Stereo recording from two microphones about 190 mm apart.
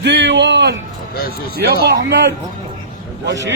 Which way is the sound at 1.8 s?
60° right (ahead or behind).